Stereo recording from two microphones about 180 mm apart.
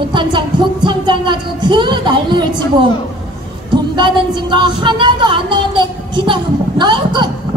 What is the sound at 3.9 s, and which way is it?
A woman's voice, 25° right (ahead or behind).